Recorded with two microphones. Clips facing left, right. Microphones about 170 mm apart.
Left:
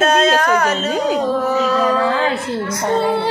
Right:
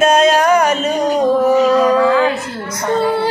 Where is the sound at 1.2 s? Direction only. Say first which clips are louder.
Right 5 dB; 15° right (ahead or behind).